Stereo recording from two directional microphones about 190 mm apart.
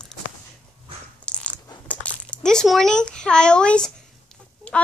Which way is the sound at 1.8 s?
5° left (ahead or behind).